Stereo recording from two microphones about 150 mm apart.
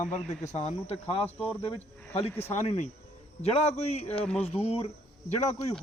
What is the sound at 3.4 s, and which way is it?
Speech, 45° left (ahead or behind).